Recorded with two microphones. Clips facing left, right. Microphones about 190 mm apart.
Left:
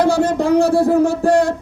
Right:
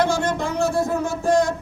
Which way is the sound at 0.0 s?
35° left (ahead or behind).